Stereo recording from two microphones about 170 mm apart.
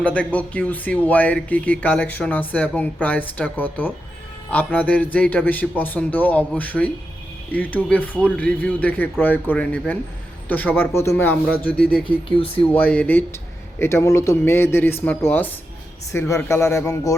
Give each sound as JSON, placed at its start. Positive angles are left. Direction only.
{"t": 0.0, "sound": "speech", "side_deg": 10}
{"t": 12.0, "sound": "speech", "side_deg": 30}
{"t": 12.8, "sound": "speech", "side_deg": 10}